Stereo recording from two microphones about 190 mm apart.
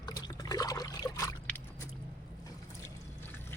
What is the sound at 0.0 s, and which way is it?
Liquid, 20° left (ahead or behind).